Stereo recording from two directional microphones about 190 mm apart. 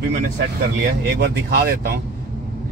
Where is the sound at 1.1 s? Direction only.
55° right (ahead or behind).